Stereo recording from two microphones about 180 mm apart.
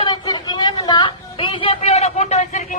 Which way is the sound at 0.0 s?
25° left (ahead or behind).